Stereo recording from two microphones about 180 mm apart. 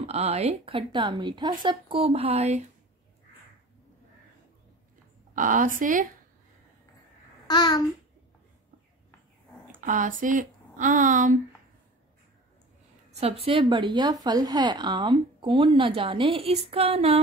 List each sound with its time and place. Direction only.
0.0 s speech: 35° right (ahead or behind)
5.3 s speech: 45° right (ahead or behind)
7.4 s babbling: 25° left (ahead or behind)
9.8 s speech: 45° right (ahead or behind)
13.1 s a woman's voice: 35° right (ahead or behind)